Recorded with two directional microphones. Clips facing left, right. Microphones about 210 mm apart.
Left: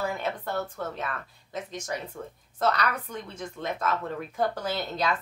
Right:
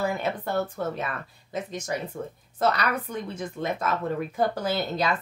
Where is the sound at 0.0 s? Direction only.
10° right (ahead or behind).